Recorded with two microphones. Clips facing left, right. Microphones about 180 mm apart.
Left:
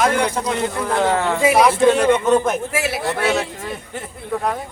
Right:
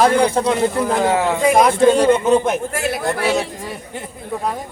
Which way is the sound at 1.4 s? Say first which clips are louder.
Right 1 dB; 5° left (ahead or behind).